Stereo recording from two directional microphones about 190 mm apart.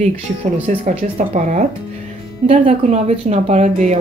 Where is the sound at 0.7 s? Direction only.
40° right (ahead or behind).